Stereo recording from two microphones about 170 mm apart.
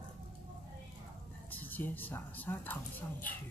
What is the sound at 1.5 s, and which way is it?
Speech, 10° left (ahead or behind).